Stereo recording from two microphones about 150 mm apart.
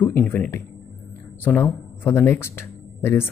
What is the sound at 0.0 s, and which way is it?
Speech, 10° left (ahead or behind).